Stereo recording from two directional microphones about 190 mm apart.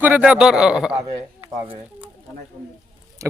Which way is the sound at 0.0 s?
10° right (ahead or behind).